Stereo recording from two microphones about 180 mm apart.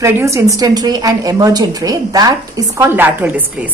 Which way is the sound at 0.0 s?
15° right (ahead or behind).